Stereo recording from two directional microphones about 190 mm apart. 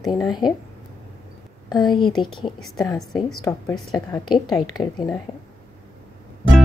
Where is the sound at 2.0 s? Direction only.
25° left (ahead or behind).